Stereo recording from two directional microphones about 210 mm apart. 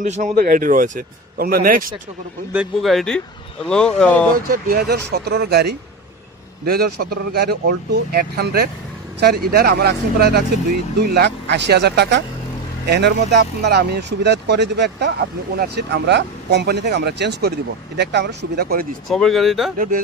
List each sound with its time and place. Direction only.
0.0 s speech: 35° right (ahead or behind)
2.5 s speech: 5° right (ahead or behind)
4.5 s speech: 45° right (ahead or behind)
19.0 s speech: centre (ahead or behind)